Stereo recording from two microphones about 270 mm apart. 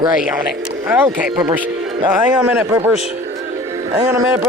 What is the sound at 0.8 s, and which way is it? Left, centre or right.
Speech, centre.